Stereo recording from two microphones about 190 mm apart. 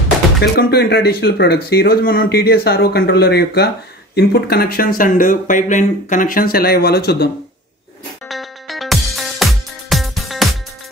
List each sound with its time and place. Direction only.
0.4 s speech: 55° left (ahead or behind)
8.3 s music: centre (ahead or behind)